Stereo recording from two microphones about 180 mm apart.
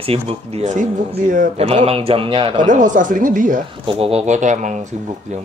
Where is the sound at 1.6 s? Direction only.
35° right (ahead or behind).